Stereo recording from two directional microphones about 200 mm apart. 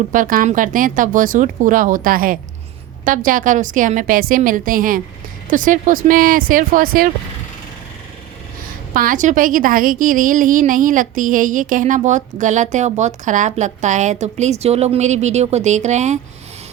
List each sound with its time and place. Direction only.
0.1 s speech: 45° right (ahead or behind)
8.9 s a woman's voice: 40° right (ahead or behind)